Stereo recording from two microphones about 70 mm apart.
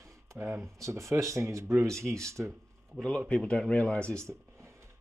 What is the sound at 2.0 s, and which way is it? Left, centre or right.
Speech, centre.